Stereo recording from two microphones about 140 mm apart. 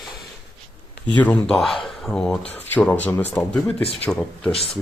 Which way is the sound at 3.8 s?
45° left (ahead or behind).